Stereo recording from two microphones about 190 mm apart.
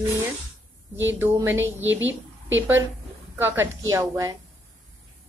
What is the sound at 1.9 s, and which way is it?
Speech, 85° right.